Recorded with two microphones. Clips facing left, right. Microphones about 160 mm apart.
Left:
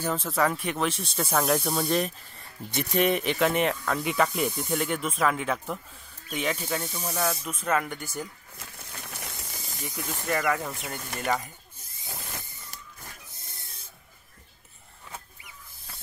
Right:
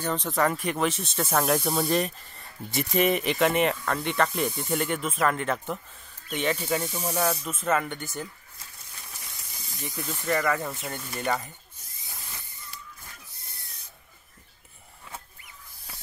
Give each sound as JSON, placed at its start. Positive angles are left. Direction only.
{"t": 0.0, "sound": "speech", "side_deg": 5}
{"t": 6.9, "sound": "speech", "side_deg": -40}
{"t": 7.2, "sound": "speech", "side_deg": 0}
{"t": 9.1, "sound": "steam", "side_deg": 75}
{"t": 9.8, "sound": "speech", "side_deg": 5}
{"t": 13.4, "sound": "a sound", "side_deg": 90}